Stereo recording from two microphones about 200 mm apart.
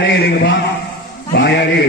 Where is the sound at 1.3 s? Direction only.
55° left (ahead or behind).